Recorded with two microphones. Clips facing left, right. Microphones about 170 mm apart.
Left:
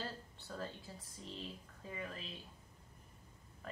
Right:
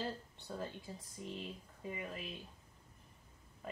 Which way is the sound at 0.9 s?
15° right (ahead or behind).